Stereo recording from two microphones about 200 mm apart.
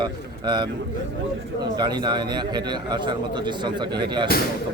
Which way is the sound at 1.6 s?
20° right (ahead or behind).